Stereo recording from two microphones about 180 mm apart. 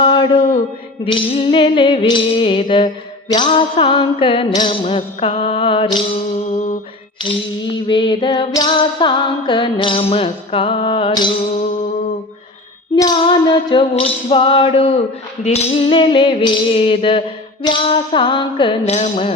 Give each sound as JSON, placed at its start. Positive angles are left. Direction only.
{"t": 0.0, "sound": "a sound", "side_deg": 25}
{"t": 1.0, "sound": "music", "side_deg": 30}
{"t": 6.5, "sound": "music", "side_deg": 40}
{"t": 7.9, "sound": "music", "side_deg": 25}
{"t": 13.0, "sound": "music", "side_deg": 25}